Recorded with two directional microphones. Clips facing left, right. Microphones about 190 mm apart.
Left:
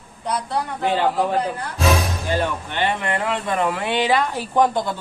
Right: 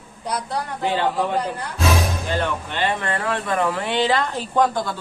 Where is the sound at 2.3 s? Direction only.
15° left (ahead or behind).